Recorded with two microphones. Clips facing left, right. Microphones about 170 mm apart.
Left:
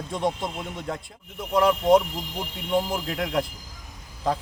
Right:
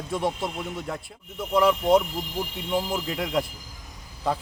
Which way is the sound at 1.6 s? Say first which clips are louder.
Left 1 dB; centre (ahead or behind).